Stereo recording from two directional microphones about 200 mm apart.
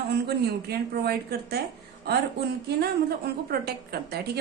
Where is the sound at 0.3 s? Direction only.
50° right (ahead or behind).